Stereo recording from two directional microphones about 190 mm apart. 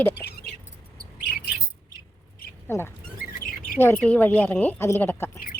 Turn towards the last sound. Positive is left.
turn(degrees=15)  # may be behind; listen again after turning